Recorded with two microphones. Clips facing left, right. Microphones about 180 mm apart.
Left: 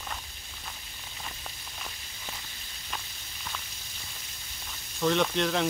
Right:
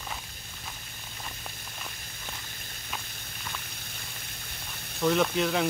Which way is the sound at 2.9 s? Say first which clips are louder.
Even; 5° right (ahead or behind).